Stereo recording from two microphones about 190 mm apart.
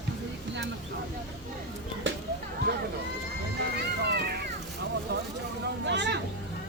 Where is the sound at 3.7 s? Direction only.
60° right (ahead or behind).